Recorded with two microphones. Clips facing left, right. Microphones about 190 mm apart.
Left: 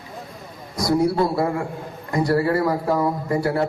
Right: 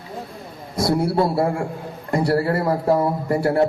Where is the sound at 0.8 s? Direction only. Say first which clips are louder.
Even; 30° right (ahead or behind).